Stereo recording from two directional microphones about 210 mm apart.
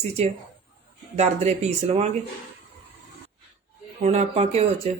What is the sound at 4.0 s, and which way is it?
Speech, 30° right (ahead or behind).